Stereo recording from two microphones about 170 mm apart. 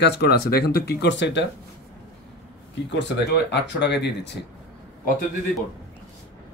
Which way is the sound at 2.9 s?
85° left.